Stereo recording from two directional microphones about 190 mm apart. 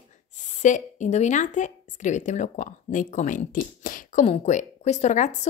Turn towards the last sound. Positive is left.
turn(degrees=40)  # may be behind; listen again after turning